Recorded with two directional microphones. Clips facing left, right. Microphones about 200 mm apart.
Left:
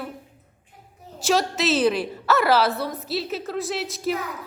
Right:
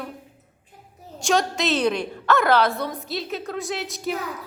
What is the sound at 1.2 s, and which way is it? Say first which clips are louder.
A woman's voice: even; 5° left (ahead or behind).